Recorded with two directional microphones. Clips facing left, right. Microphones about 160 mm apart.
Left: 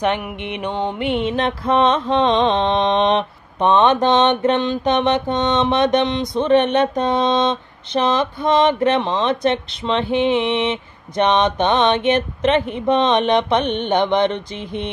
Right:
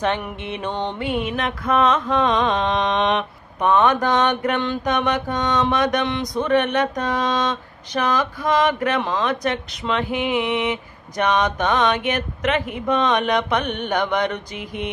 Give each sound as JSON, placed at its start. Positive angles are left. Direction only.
{"t": 0.0, "sound": "mantra", "side_deg": 15}
{"t": 1.0, "sound": "mantra", "side_deg": 25}